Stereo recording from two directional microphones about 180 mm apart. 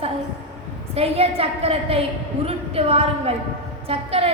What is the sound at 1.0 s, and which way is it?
A woman's voice, 35° right (ahead or behind).